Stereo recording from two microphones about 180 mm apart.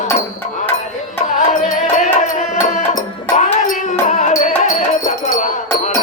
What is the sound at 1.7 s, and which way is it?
Music, 45° left (ahead or behind).